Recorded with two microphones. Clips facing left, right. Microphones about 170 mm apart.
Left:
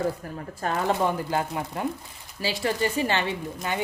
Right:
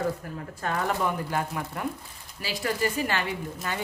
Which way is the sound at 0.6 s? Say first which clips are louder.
Left 3 dB; 30° left (ahead or behind).